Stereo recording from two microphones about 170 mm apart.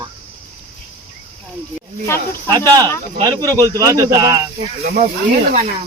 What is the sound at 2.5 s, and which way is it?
Speech, 20° right (ahead or behind).